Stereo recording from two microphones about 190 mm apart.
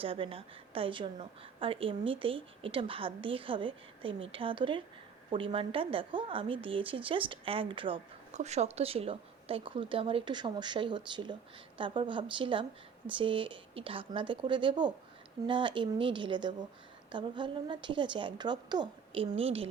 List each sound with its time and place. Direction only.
0.0 s speech: 30° right (ahead or behind)